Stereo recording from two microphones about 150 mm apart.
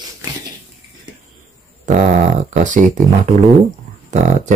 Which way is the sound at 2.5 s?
55° right (ahead or behind).